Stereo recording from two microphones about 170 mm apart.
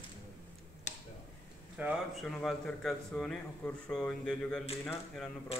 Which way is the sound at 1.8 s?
10° right (ahead or behind).